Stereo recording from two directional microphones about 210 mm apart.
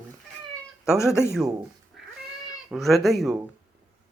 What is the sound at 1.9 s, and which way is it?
Cat, centre (ahead or behind).